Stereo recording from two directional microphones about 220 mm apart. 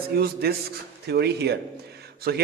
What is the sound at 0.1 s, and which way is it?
A man's voice, 45° right (ahead or behind).